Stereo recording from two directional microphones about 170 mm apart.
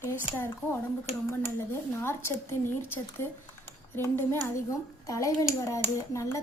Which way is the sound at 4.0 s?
15° left (ahead or behind).